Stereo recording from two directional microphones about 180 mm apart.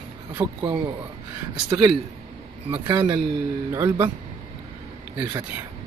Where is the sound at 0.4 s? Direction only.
25° right (ahead or behind).